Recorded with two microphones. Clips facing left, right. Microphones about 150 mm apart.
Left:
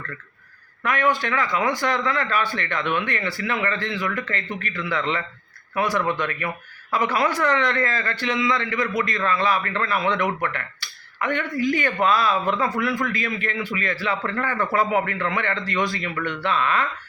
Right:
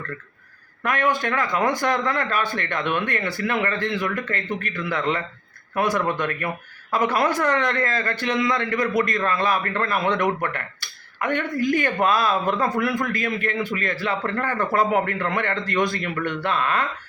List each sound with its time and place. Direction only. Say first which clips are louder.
0.9 s a man's voice: even; 50° right (ahead or behind)